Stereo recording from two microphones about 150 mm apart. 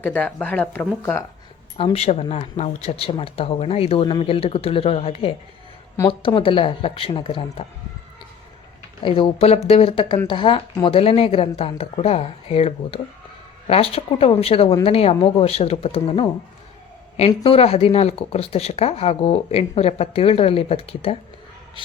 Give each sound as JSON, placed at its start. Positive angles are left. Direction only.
{"t": 0.0, "sound": "speech", "side_deg": 10}
{"t": 1.8, "sound": "speech", "side_deg": 40}
{"t": 9.0, "sound": "speech", "side_deg": 35}